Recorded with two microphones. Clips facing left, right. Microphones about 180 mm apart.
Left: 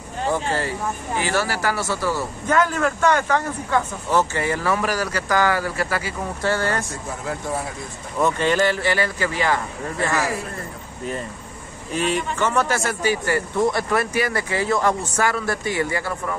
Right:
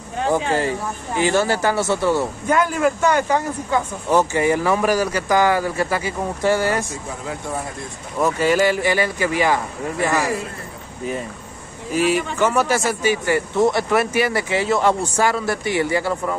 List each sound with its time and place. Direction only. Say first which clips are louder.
0.3 s speech: right 4 dB; 15° right (ahead or behind)
2.4 s speech: even; 10° right (ahead or behind)
8.2 s speech: right 2 dB; 5° right (ahead or behind)
11.9 s speech: right 4 dB; 5° right (ahead or behind)
13.0 s speech: right 2 dB; 20° right (ahead or behind)
15.3 s speech: right 2 dB; 15° right (ahead or behind)